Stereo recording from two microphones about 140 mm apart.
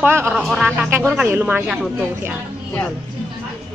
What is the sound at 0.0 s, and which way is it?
Speech, 20° right (ahead or behind).